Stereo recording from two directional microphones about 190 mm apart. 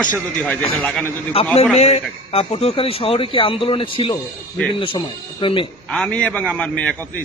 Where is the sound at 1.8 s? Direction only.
35° left (ahead or behind).